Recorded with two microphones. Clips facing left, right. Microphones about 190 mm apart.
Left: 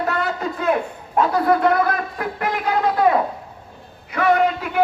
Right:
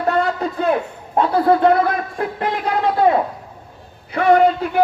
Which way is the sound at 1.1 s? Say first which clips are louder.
Right 2 dB; 30° right (ahead or behind).